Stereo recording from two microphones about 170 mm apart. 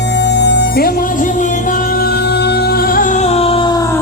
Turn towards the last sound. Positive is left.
turn(degrees=20)  # may be behind; listen again after turning